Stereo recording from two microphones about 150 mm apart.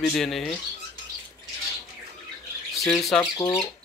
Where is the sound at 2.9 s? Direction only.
Centre (ahead or behind).